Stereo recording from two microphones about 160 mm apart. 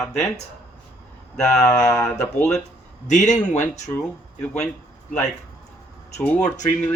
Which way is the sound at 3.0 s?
50° left (ahead or behind).